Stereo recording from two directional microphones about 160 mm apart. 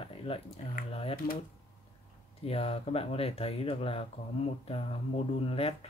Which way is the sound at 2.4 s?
40° left (ahead or behind).